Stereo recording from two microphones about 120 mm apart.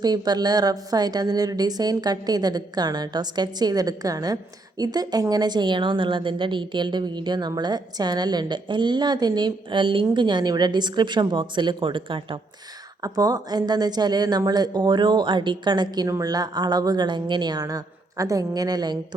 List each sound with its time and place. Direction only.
0.0 s a woman's voice: 35° right (ahead or behind)
13.0 s a woman's voice: 30° right (ahead or behind)